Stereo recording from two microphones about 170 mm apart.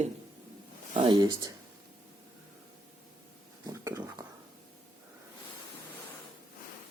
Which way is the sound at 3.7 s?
20° right (ahead or behind).